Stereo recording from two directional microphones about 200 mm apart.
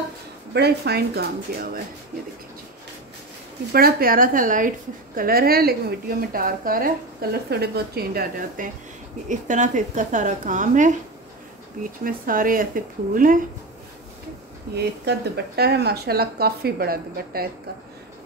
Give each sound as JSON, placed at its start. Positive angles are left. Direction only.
{"t": 0.5, "sound": "a woman's voice", "side_deg": -55}
{"t": 3.7, "sound": "a woman's voice", "side_deg": -50}
{"t": 12.0, "sound": "a woman's voice", "side_deg": -45}
{"t": 14.8, "sound": "a woman's voice", "side_deg": -55}